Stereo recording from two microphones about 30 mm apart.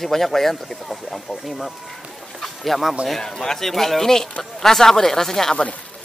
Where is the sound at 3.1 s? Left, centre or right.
Centre.